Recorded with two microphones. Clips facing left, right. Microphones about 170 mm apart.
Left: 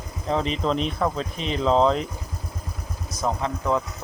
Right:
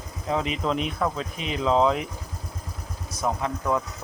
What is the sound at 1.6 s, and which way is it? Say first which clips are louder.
Speech: left 2 dB; 30° left (ahead or behind).